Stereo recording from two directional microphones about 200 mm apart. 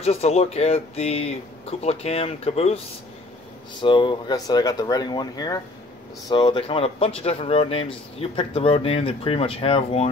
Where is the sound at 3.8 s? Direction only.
25° left (ahead or behind).